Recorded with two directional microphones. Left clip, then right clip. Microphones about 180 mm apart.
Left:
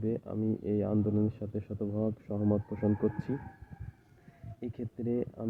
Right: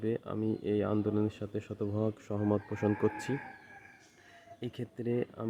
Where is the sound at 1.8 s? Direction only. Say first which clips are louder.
Even; 45° right (ahead or behind).